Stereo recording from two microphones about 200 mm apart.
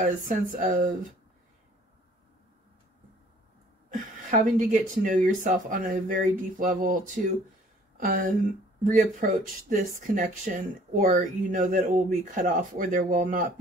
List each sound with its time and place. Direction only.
0.0 s speech: 45° right (ahead or behind)
3.9 s speech: 45° right (ahead or behind)
8.0 s speech: 45° right (ahead or behind)